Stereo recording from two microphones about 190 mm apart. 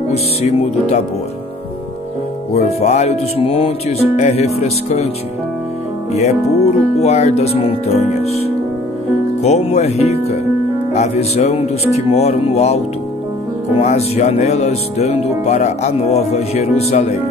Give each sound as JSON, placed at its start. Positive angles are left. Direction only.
{"t": 0.1, "sound": "speech", "side_deg": 35}
{"t": 2.5, "sound": "speech", "side_deg": 35}
{"t": 6.1, "sound": "speech", "side_deg": 35}
{"t": 13.8, "sound": "speech", "side_deg": 35}